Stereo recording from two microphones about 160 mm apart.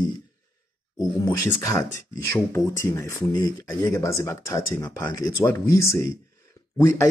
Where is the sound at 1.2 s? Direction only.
10° left (ahead or behind).